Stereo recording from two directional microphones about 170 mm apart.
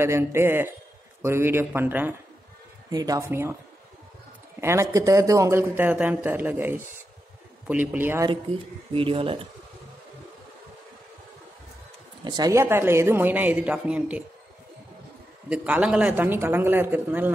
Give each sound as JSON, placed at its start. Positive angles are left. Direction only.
{"t": 0.0, "sound": "speech", "side_deg": -15}
{"t": 2.9, "sound": "speech", "side_deg": -20}
{"t": 4.6, "sound": "speech", "side_deg": -15}
{"t": 8.9, "sound": "speech", "side_deg": -30}
{"t": 12.3, "sound": "speech", "side_deg": -20}
{"t": 15.5, "sound": "speech", "side_deg": -10}